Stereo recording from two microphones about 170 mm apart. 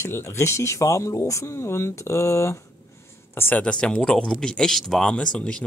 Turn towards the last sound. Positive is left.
turn(degrees=5)  # may be behind; listen again after turning